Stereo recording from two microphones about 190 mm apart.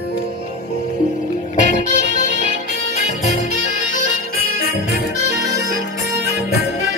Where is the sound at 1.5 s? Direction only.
40° left (ahead or behind).